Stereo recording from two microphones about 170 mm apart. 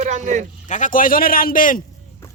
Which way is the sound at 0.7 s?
50° left (ahead or behind).